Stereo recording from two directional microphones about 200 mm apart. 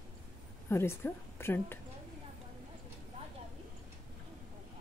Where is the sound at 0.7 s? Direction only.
10° left (ahead or behind).